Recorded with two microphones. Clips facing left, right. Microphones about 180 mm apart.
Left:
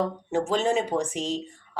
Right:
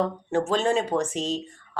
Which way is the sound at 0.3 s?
15° left (ahead or behind).